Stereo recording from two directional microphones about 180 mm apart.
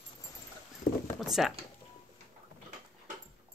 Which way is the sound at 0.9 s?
60° left (ahead or behind).